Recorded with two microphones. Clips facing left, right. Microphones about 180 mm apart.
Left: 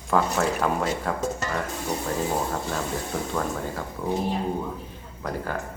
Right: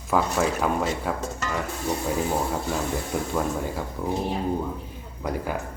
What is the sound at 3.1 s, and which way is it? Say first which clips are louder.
Speech: right 2 dB; 10° right (ahead or behind).